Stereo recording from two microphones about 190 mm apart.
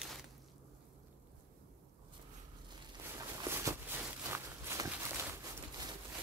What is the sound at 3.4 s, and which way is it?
Walk, 15° right (ahead or behind).